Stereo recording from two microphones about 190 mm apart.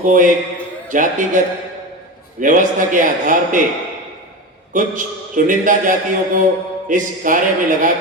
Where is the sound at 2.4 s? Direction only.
45° right (ahead or behind).